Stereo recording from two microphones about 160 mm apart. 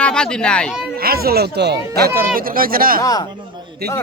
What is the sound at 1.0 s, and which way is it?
Speech, 70° right (ahead or behind).